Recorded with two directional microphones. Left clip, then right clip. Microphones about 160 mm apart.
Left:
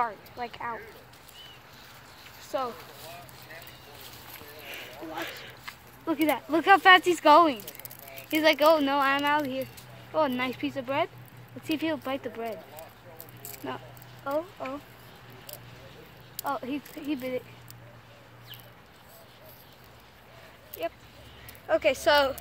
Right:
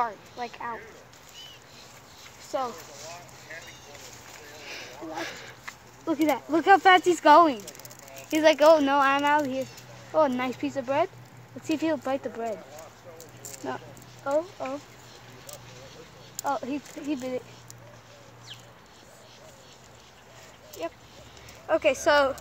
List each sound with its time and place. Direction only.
0.0 s speech: 15° right (ahead or behind)
2.5 s speech: 35° right (ahead or behind)
5.1 s speech: 15° right (ahead or behind)
6.0 s speech: 25° right (ahead or behind)
8.3 s speech: 55° right (ahead or behind)
14.3 s speech: 50° right (ahead or behind)
16.4 s speech: 50° right (ahead or behind)
20.8 s speech: 50° right (ahead or behind)
21.6 s speech: 40° right (ahead or behind)